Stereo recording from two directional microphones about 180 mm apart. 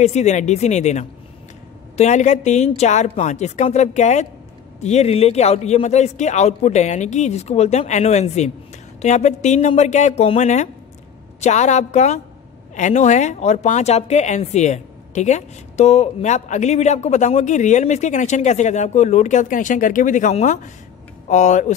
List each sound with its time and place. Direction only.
0.0 s speech: 40° left (ahead or behind)